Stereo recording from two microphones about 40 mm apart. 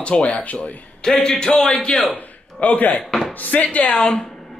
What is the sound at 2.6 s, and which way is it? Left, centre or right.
Speech, left.